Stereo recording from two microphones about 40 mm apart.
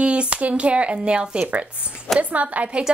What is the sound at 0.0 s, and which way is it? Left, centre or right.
A woman's voice, right.